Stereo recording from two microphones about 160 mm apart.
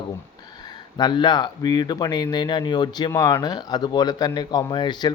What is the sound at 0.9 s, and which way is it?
A man's voice, 25° left (ahead or behind).